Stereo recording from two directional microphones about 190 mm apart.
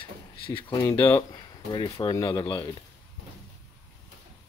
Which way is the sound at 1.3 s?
25° left (ahead or behind).